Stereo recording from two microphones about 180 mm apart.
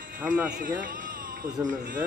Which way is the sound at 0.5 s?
50° right (ahead or behind).